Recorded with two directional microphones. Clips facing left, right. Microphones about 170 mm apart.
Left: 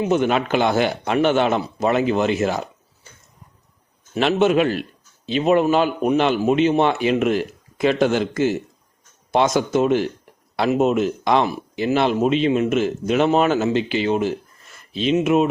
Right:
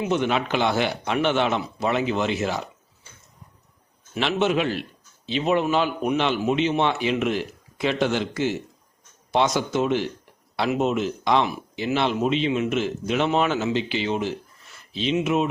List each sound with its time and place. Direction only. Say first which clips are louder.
0.0 s a man's voice: left 4 dB; 45° left (ahead or behind)
4.1 s a man's voice: left 5 dB; 45° left (ahead or behind)